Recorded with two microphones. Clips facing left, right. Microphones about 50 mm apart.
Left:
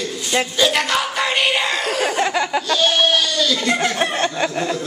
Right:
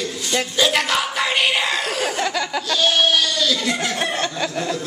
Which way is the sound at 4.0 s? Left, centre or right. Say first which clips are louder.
Left 3 dB; centre.